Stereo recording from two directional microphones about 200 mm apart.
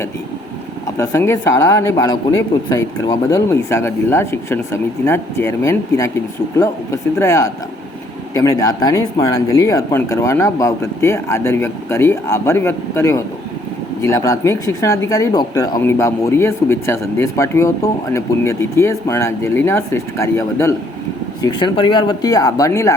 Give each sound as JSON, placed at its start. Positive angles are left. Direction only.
{"t": 0.9, "sound": "speech", "side_deg": 15}
{"t": 21.4, "sound": "speech", "side_deg": 25}